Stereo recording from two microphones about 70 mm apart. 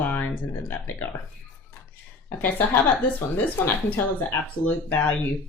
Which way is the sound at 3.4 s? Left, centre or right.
Left.